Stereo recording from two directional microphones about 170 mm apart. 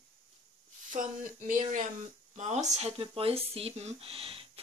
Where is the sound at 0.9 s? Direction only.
50° right (ahead or behind); by 4.6 s 35° right (ahead or behind).